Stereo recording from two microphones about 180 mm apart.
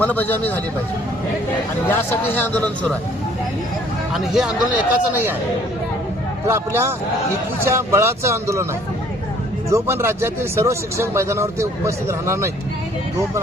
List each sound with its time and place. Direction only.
0.0 s a man's voice: 10° left (ahead or behind)
1.9 s a man's voice: 10° left (ahead or behind)
4.1 s speech: centre (ahead or behind)
6.5 s speech: 15° right (ahead or behind)
9.7 s speech: 15° right (ahead or behind)